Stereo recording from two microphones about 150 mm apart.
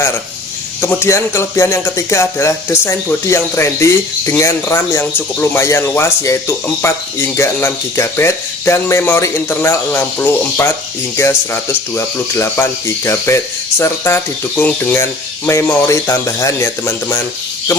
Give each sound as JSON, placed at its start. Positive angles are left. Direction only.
{"t": 0.8, "sound": "speech", "side_deg": 15}